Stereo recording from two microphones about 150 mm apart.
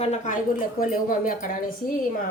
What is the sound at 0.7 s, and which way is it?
Speech, 65° left (ahead or behind).